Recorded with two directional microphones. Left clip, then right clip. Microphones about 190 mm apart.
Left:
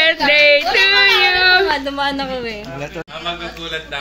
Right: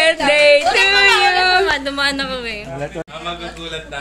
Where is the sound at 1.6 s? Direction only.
35° left (ahead or behind).